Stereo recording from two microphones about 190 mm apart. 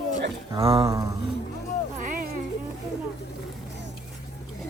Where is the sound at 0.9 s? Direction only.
15° right (ahead or behind).